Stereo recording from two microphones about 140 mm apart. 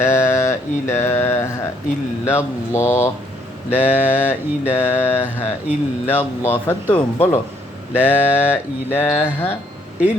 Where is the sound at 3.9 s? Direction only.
10° right (ahead or behind).